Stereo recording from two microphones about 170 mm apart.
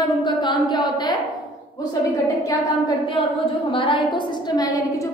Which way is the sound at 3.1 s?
30° left (ahead or behind).